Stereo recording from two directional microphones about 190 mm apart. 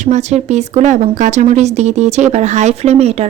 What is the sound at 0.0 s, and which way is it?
Speech, 35° right (ahead or behind).